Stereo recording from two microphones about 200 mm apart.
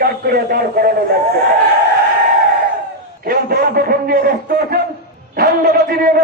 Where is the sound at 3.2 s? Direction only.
50° right (ahead or behind).